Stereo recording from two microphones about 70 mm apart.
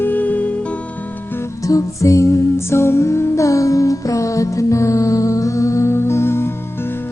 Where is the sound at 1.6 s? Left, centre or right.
Left.